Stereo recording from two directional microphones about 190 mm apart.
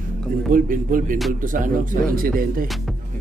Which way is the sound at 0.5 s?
45° right (ahead or behind).